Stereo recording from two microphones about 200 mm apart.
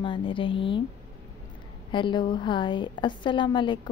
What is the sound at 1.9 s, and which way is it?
A woman's voice, 25° left (ahead or behind).